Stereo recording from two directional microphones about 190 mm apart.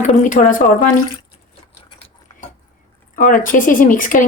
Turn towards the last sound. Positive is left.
turn(degrees=45)  # may be behind; listen again after turning